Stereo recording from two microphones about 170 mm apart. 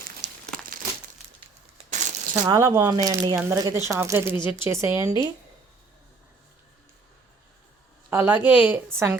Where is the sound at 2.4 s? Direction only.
15° right (ahead or behind).